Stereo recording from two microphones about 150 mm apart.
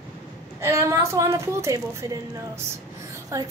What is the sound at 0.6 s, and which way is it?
A woman's voice, 20° right (ahead or behind).